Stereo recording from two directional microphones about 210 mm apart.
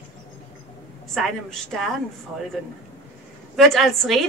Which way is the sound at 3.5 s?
Centre (ahead or behind).